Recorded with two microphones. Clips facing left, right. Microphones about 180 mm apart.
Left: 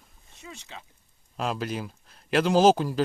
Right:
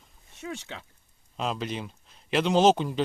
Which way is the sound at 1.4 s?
Centre (ahead or behind).